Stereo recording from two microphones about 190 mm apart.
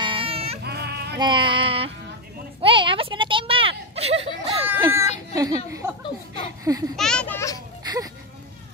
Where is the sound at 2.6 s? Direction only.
25° right (ahead or behind).